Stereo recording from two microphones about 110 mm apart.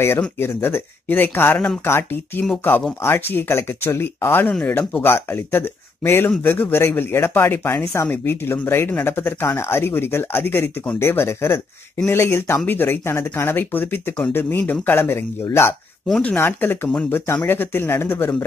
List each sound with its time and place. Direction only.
0.4 s speech: 20° left (ahead or behind)
4.5 s speech: 10° left (ahead or behind)
4.7 s speech: 20° left (ahead or behind)
16.1 s speech: 10° left (ahead or behind)